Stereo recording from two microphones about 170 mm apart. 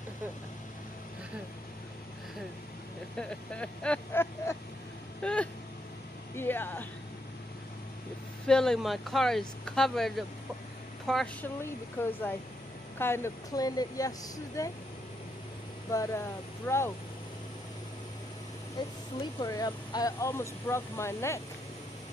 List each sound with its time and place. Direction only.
3.2 s speech: 5° left (ahead or behind)
8.5 s speech: 5° left (ahead or behind); by 14.7 s 20° left (ahead or behind)
15.9 s speech: 20° left (ahead or behind)
19.4 s speech: 20° left (ahead or behind)